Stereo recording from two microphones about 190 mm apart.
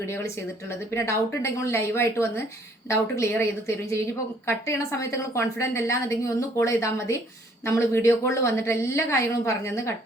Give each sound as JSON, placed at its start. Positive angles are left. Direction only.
{"t": 0.7, "sound": "a woman's voice", "side_deg": 15}